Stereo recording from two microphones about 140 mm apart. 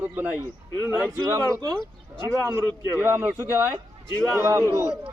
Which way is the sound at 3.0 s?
15° right (ahead or behind).